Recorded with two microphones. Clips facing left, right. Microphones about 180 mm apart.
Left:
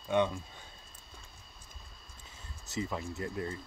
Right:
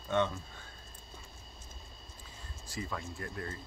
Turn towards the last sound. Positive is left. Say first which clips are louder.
# left 4 dB
turn(degrees=20)  # may be behind; listen again after turning